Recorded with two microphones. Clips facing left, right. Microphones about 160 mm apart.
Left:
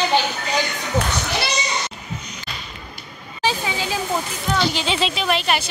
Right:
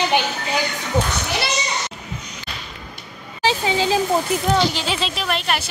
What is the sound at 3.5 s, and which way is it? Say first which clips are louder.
Speech: right 5 dB; 30° right (ahead or behind).